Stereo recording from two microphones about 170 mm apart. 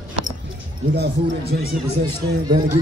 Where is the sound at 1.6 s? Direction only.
65° right (ahead or behind).